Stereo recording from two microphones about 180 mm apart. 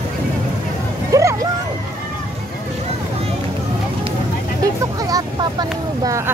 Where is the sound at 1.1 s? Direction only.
20° right (ahead or behind).